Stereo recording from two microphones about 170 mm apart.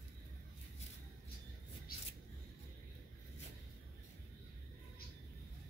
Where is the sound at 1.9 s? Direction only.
60° left (ahead or behind).